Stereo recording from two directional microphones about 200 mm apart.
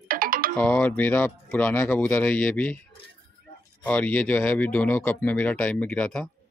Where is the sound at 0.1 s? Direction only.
45° right (ahead or behind).